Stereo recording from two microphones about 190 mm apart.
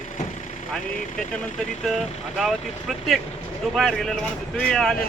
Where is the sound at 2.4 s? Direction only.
Centre (ahead or behind).